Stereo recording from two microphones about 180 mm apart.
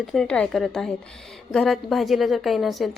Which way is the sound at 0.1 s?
5° left (ahead or behind).